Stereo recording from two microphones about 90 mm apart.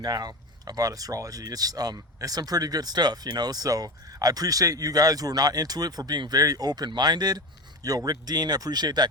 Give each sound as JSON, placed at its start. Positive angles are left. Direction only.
{"t": 0.0, "sound": "speech", "side_deg": -45}